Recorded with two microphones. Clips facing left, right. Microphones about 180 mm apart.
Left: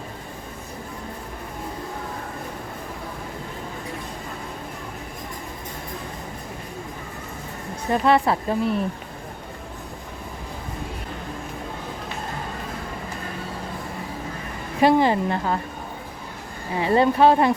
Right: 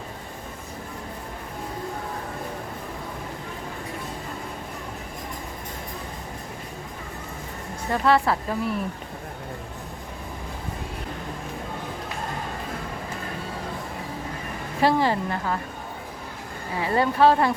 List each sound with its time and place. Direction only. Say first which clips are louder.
7.9 s speech: left 2 dB; 20° left (ahead or behind)
14.8 s speech: left 4 dB; 20° left (ahead or behind)
16.7 s speech: left 4 dB; 25° left (ahead or behind)